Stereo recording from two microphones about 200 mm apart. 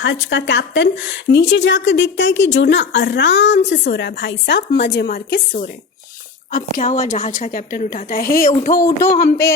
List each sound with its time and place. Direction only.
0.0 s a woman's voice: 65° left (ahead or behind); by 5.4 s 50° left (ahead or behind)
6.5 s speech: 40° left (ahead or behind)